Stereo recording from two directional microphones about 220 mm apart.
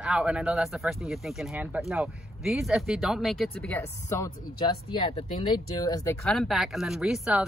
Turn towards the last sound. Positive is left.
turn(degrees=0)  # may be behind; listen again after turning